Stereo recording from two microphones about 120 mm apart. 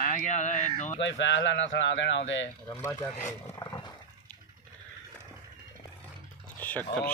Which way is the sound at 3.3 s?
30° left (ahead or behind).